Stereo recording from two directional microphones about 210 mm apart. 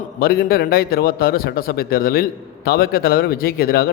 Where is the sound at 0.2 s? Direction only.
45° left (ahead or behind).